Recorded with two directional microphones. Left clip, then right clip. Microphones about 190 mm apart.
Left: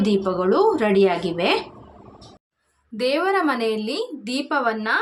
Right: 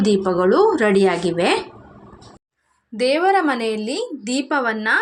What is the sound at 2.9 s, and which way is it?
A woman's voice, 15° right (ahead or behind).